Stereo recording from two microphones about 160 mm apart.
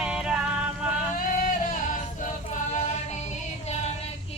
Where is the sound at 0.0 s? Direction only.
5° right (ahead or behind).